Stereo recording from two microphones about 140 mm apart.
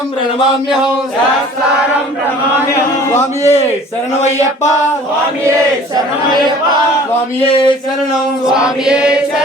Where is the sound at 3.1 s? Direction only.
15° left (ahead or behind).